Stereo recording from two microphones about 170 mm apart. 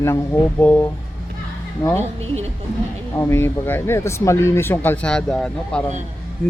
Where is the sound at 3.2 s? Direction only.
15° left (ahead or behind).